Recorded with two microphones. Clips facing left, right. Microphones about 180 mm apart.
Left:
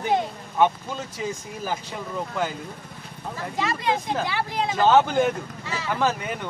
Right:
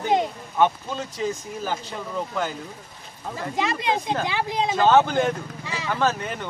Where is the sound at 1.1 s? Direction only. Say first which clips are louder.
Right 3 dB; 10° left (ahead or behind).